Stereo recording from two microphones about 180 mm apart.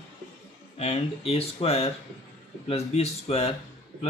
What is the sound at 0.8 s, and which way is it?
Speech, 35° left (ahead or behind).